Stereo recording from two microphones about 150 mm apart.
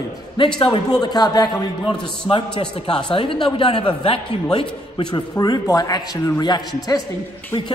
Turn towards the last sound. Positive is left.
turn(degrees=25)  # may be behind; listen again after turning